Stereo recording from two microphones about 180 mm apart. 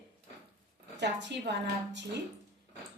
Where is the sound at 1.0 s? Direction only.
75° right (ahead or behind).